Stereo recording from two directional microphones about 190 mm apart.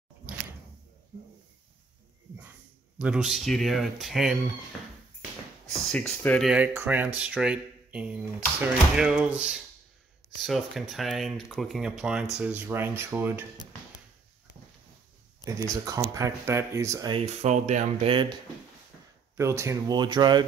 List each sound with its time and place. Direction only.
3.0 s speech: 5° right (ahead or behind)
5.8 s speech: 5° left (ahead or behind)
6.5 s speech: 10° right (ahead or behind)
15.4 s speech: 20° right (ahead or behind)
17.2 s speech: 35° right (ahead or behind)
18.1 s speech: 25° right (ahead or behind)